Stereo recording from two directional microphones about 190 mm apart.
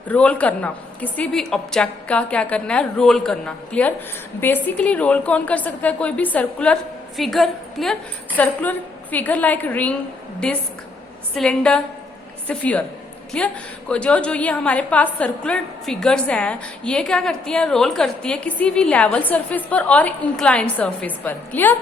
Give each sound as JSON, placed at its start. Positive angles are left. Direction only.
{"t": 0.1, "sound": "a woman's voice", "side_deg": 5}